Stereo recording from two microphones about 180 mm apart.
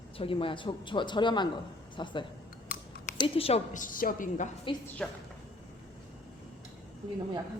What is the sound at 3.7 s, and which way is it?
Speech, 50° left (ahead or behind).